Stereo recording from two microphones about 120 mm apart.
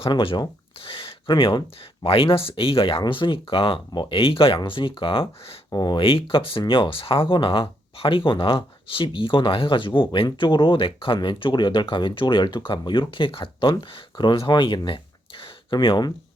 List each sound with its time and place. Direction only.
0.0 s speech: 50° left (ahead or behind)
5.7 s speech: 35° left (ahead or behind)
6.0 s speech: 50° left (ahead or behind)